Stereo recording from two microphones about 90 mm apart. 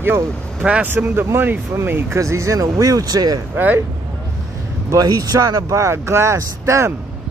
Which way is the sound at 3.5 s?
20° right (ahead or behind).